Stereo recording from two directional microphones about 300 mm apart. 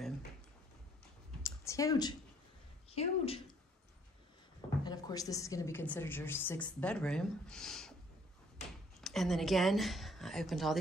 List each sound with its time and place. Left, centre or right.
1.4 s a sound: centre
2.9 s speech: centre
4.6 s a woman's voice: centre
9.0 s a woman's voice: centre